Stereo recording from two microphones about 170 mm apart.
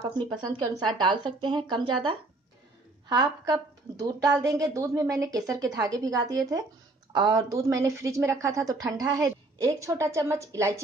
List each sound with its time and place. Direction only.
0.0 s a woman's voice: 30° right (ahead or behind)